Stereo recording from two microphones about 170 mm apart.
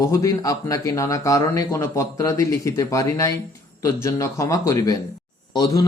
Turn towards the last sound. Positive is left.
turn(degrees=25)  # may be behind; listen again after turning